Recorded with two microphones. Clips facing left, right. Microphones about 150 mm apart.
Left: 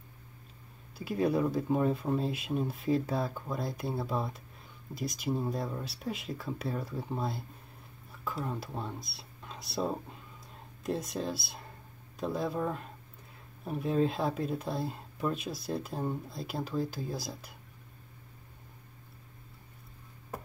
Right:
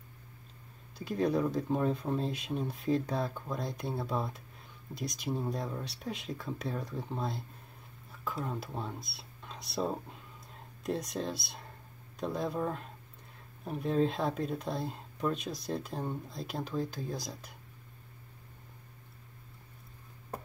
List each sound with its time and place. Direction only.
0.9 s speech: 5° left (ahead or behind)